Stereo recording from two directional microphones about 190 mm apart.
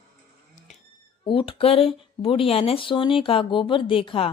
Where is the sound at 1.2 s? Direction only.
30° left (ahead or behind).